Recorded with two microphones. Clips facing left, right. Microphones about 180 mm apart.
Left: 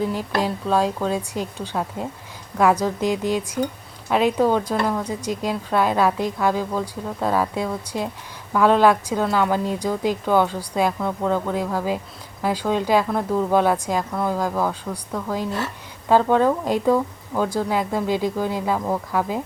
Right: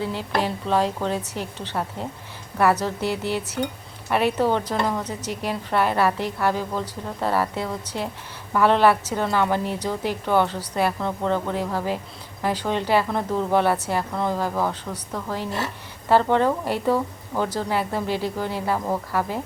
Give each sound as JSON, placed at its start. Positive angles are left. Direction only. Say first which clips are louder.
{"t": 0.1, "sound": "a woman's voice", "louder": "left 2 dB", "side_deg": 15}